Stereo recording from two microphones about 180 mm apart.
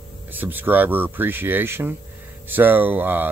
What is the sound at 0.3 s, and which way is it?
Speech, 10° right (ahead or behind).